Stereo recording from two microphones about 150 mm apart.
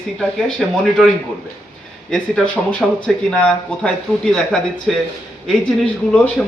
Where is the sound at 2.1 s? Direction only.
5° left (ahead or behind).